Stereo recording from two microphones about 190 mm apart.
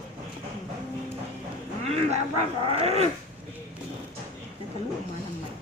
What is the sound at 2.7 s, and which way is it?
Speech, 30° right (ahead or behind).